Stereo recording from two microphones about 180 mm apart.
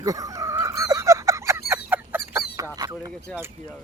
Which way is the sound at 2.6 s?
20° right (ahead or behind).